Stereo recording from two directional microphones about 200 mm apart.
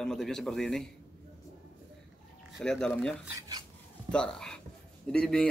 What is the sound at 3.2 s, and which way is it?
Speech, 15° right (ahead or behind).